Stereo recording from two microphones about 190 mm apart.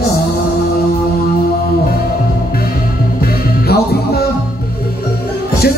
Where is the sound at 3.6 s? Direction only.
55° left (ahead or behind).